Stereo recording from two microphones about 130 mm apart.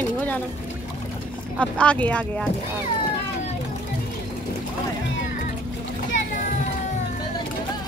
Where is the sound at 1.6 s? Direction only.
10° left (ahead or behind).